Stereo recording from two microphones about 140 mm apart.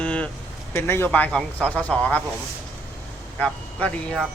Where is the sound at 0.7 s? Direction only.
15° left (ahead or behind).